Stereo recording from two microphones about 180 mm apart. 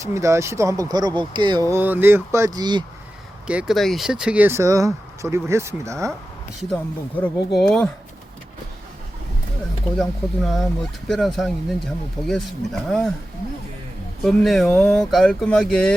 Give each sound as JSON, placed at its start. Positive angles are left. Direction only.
{"t": 0.0, "sound": "speech", "side_deg": -15}
{"t": 3.4, "sound": "speech", "side_deg": -5}
{"t": 7.2, "sound": "speech", "side_deg": 5}
{"t": 10.0, "sound": "speech", "side_deg": 0}
{"t": 14.2, "sound": "speech", "side_deg": 0}